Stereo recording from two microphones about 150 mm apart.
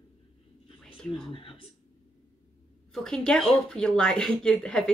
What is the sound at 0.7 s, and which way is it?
Speech, 40° left (ahead or behind).